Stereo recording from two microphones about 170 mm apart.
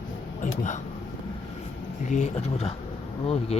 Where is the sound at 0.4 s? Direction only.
45° left (ahead or behind).